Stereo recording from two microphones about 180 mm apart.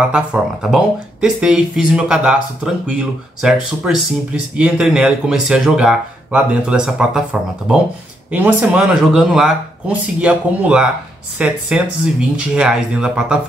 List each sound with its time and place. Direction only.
0.1 s speech: 5° right (ahead or behind)